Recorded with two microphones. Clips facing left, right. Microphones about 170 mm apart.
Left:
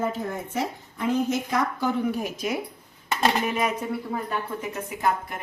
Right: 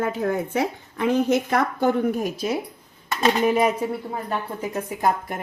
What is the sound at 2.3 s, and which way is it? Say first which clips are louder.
Speech: right 3 dB; 30° right (ahead or behind).